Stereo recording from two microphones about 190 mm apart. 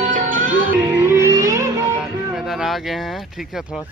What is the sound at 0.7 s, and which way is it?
Music, 15° right (ahead or behind).